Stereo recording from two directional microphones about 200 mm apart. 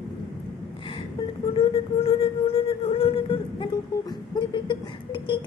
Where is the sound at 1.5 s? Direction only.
30° left (ahead or behind).